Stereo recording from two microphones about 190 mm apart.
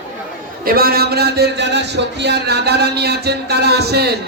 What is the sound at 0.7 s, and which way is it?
A man's voice, 50° right (ahead or behind).